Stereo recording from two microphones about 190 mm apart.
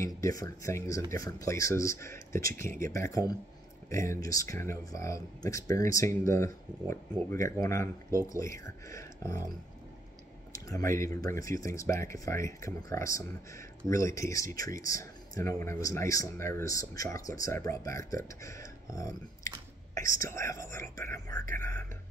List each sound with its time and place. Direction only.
0.0 s speech: 15° left (ahead or behind)
10.5 s speech: 15° left (ahead or behind)